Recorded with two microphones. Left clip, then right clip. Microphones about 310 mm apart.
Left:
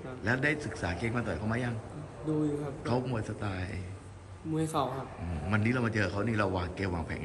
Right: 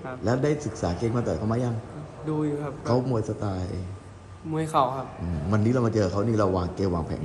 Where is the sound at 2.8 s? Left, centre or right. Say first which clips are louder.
Right 9 dB; centre.